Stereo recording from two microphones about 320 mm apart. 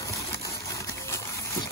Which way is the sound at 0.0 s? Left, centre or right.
Centre.